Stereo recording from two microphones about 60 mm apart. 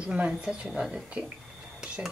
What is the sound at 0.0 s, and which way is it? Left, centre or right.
A woman's voice, centre.